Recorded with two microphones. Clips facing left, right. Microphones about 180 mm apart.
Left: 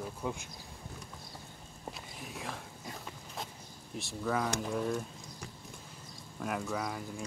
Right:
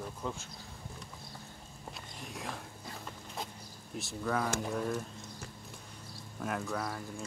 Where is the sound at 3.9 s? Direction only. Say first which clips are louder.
Even; centre (ahead or behind).